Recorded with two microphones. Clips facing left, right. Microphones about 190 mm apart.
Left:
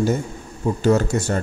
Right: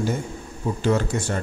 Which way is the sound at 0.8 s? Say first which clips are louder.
Left 4 dB; 40° left (ahead or behind).